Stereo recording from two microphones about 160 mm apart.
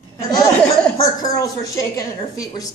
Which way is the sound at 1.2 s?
20° left (ahead or behind).